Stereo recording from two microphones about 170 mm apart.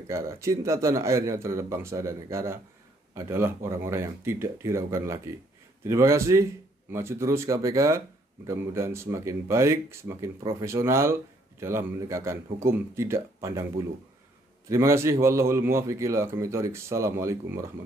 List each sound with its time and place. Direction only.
0.1 s a man's voice: 15° right (ahead or behind)